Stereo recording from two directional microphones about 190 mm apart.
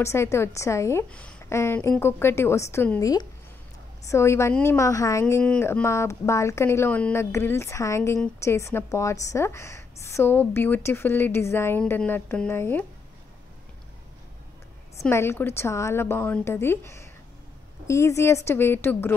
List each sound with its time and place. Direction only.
0.0 s speech: 15° left (ahead or behind)
5.2 s speech: 5° left (ahead or behind)
15.0 s speech: 15° left (ahead or behind)